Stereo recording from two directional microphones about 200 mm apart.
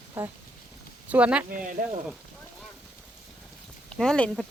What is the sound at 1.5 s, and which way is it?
Speech, 40° right (ahead or behind).